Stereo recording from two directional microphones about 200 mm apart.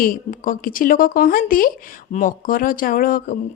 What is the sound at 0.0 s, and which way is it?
A woman's voice, 45° left (ahead or behind).